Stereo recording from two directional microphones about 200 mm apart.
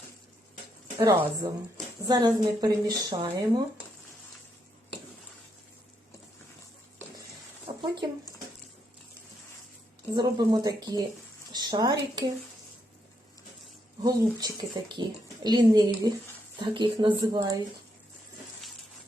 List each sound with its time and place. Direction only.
0.9 s a woman's voice: 20° right (ahead or behind)
7.7 s a sound: 25° right (ahead or behind)
10.2 s a woman's voice: 20° right (ahead or behind)
14.0 s a woman's voice: 20° right (ahead or behind)